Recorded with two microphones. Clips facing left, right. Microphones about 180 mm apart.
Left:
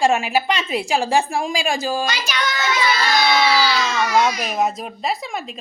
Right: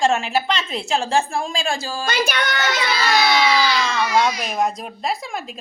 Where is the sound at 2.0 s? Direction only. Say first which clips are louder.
Right 2 dB; 55° right (ahead or behind).